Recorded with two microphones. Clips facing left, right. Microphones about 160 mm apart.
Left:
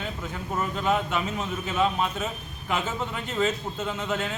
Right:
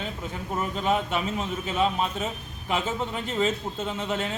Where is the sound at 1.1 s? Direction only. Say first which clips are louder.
Right 1 dB; 30° right (ahead or behind).